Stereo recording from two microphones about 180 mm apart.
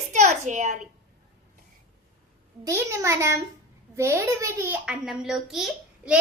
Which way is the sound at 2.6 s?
15° right (ahead or behind).